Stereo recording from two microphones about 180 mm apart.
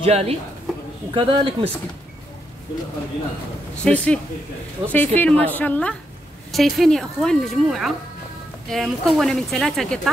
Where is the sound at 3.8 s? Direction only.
5° left (ahead or behind).